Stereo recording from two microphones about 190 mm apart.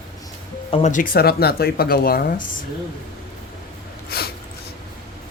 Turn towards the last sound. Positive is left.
turn(degrees=55)  # may be behind; listen again after turning